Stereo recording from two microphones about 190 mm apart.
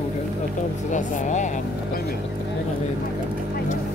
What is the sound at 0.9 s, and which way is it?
Speech, 40° left (ahead or behind).